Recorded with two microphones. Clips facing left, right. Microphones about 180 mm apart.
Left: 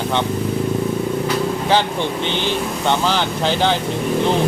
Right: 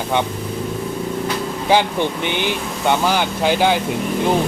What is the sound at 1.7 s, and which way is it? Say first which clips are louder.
Speech: right 4 dB; 15° right (ahead or behind).